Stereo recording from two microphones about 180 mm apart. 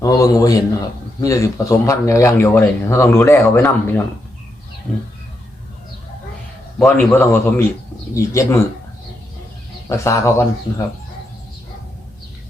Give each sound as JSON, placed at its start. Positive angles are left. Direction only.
{"t": 0.0, "sound": "a man's voice", "side_deg": 20}
{"t": 6.7, "sound": "a man's voice", "side_deg": 0}
{"t": 7.0, "sound": "speech", "side_deg": 15}
{"t": 9.9, "sound": "speech", "side_deg": 15}